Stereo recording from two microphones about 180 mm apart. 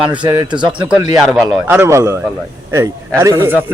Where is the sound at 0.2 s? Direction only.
25° right (ahead or behind).